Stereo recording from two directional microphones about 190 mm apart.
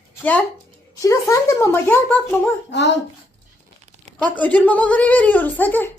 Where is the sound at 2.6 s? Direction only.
65° left (ahead or behind).